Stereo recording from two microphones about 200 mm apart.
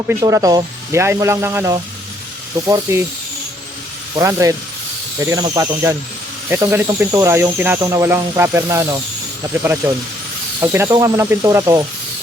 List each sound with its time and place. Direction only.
0.1 s speech: 15° right (ahead or behind)
4.1 s speech: 15° right (ahead or behind)